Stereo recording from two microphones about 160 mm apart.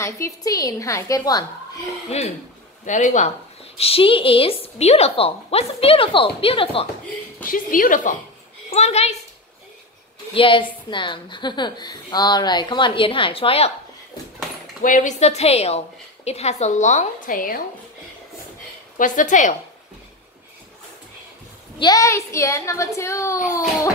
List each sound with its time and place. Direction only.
0.0 s a woman's voice: 20° left (ahead or behind)
2.1 s a woman's voice: 45° left (ahead or behind)
3.7 s a woman's voice: 35° left (ahead or behind)
7.4 s a woman's voice: 60° left (ahead or behind)
8.6 s a woman's voice: 40° left (ahead or behind)
10.3 s a woman's voice: 30° left (ahead or behind)
14.8 s a woman's voice: 55° left (ahead or behind)
18.9 s a woman's voice: 55° left (ahead or behind)
21.7 s a woman's voice: 25° left (ahead or behind)